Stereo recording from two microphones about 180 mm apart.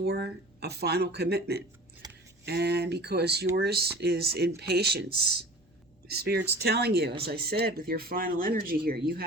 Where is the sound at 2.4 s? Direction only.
65° right (ahead or behind).